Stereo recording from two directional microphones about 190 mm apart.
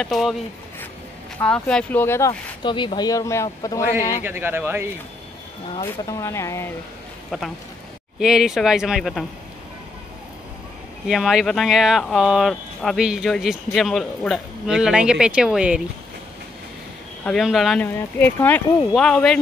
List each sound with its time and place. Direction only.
0.0 s speech: centre (ahead or behind)
1.4 s speech: 5° left (ahead or behind)
2.6 s speech: 25° left (ahead or behind)
4.2 s speech: 10° right (ahead or behind)
6.0 s speech: 15° left (ahead or behind)
7.2 s speech: centre (ahead or behind)
11.1 s speech: centre (ahead or behind)
17.2 s speech: centre (ahead or behind)
17.9 s speech: 10° left (ahead or behind)
18.9 s speech: 5° left (ahead or behind)